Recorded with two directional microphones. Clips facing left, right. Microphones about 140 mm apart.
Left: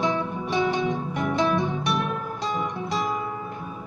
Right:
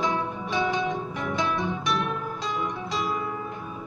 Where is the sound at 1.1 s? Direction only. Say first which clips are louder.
Left 4 dB; 50° left (ahead or behind).